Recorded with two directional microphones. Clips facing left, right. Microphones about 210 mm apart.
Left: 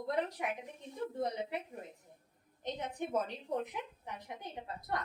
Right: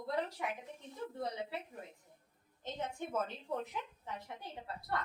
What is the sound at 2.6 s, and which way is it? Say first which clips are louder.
A woman's voice: left 2 dB; 15° left (ahead or behind).